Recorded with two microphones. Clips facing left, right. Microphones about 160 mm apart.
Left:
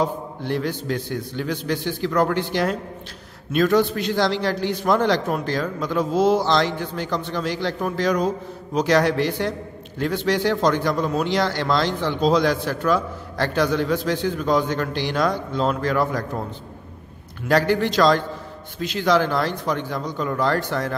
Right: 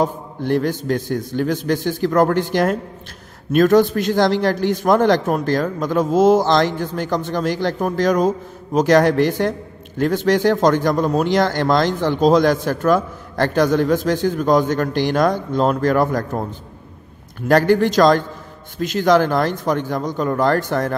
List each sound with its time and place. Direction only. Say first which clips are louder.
0.0 s a man's voice: right 3 dB; 45° right (ahead or behind)
17.5 s a man's voice: right 5 dB; 50° right (ahead or behind)